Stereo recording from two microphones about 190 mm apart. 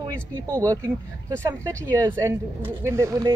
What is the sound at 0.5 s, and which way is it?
Speech, 15° right (ahead or behind).